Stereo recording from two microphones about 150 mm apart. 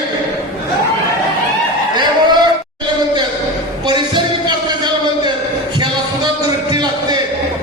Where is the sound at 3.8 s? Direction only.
30° right (ahead or behind).